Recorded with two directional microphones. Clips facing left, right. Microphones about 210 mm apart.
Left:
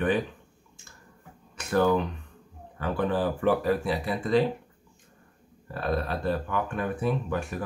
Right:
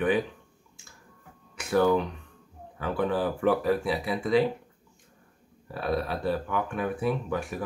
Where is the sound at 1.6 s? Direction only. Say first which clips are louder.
Right 1 dB; 5° right (ahead or behind).